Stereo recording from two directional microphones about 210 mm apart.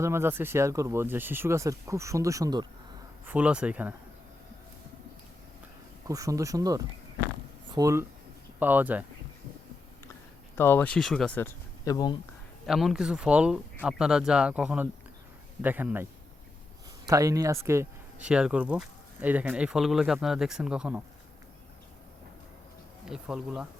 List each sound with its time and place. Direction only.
0.0 s speech: 10° right (ahead or behind)
3.2 s speech: 5° right (ahead or behind)
6.1 s speech: 15° right (ahead or behind)
10.5 s speech: 10° left (ahead or behind)
12.6 s speech: centre (ahead or behind)
17.1 s speech: 15° right (ahead or behind)
23.0 s speech: 5° right (ahead or behind)